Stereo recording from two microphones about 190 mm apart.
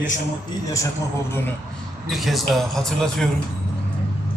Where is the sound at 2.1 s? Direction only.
Centre (ahead or behind).